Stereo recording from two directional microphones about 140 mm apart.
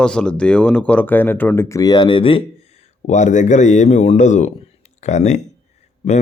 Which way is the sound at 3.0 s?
60° left (ahead or behind).